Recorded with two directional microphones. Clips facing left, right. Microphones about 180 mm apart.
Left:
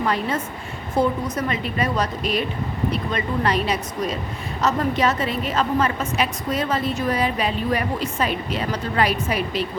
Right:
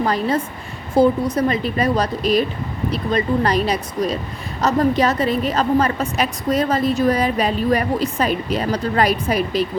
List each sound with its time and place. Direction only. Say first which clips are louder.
0.0 s a woman's voice: right 4 dB; 35° right (ahead or behind)